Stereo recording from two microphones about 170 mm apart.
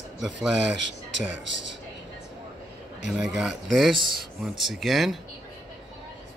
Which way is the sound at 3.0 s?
5° right (ahead or behind).